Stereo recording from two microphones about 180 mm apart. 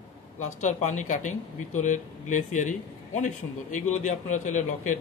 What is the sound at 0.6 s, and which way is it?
Speech, 40° left (ahead or behind).